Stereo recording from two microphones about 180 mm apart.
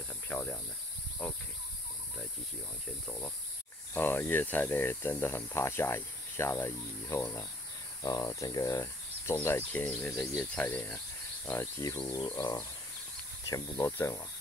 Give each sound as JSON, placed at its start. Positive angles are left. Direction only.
{"t": 0.3, "sound": "speech", "side_deg": 10}
{"t": 3.1, "sound": "speech", "side_deg": 10}
{"t": 12.1, "sound": "a sound", "side_deg": 20}
{"t": 13.5, "sound": "speech", "side_deg": 15}